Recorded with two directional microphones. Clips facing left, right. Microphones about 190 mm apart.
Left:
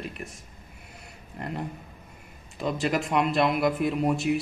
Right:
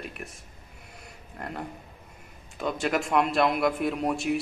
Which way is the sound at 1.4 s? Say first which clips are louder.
Left 2 dB; centre (ahead or behind).